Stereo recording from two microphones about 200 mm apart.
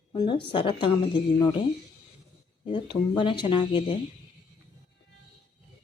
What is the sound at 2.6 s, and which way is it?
Speech, 25° left (ahead or behind).